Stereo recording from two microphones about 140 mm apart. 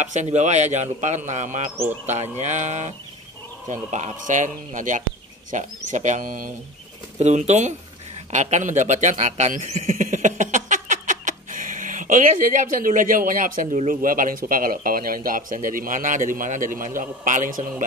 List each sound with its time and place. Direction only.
0.0 s a man's voice: 55° right (ahead or behind); by 6.5 s 80° right
7.2 s a man's voice: 55° right (ahead or behind); by 17.8 s 70° right (ahead or behind)